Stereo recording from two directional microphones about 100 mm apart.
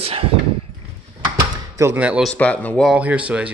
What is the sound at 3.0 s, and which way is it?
Speech, 15° right (ahead or behind).